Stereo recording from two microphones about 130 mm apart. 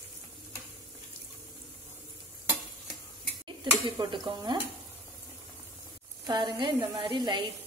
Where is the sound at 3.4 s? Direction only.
40° right (ahead or behind).